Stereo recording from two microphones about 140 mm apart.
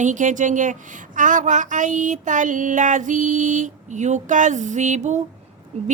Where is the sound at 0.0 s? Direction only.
65° right (ahead or behind).